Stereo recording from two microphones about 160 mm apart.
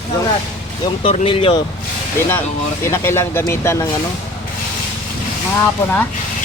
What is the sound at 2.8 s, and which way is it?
Speech, 15° left (ahead or behind).